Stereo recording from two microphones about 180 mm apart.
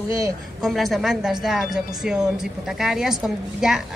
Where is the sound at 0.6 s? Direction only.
Centre (ahead or behind).